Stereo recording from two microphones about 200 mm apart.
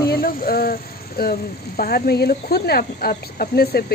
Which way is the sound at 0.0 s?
45° left (ahead or behind).